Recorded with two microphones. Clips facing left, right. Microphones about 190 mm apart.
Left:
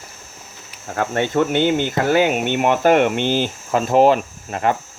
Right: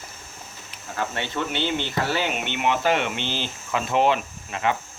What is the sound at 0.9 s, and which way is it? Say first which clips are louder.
Speech: left 9 dB; 50° left (ahead or behind).